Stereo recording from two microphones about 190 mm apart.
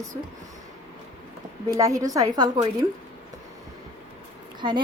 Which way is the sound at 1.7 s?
15° right (ahead or behind).